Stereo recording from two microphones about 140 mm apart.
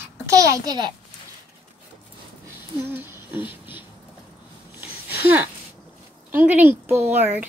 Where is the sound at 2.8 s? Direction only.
15° right (ahead or behind).